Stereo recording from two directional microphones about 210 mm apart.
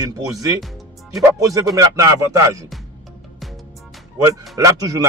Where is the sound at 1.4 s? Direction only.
15° right (ahead or behind).